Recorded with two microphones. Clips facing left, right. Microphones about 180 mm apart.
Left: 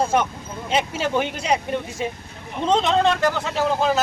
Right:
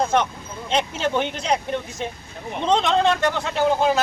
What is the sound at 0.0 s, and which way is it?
Speech, 10° left (ahead or behind).